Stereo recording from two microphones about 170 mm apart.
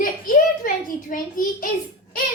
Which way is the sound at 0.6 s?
50° left (ahead or behind).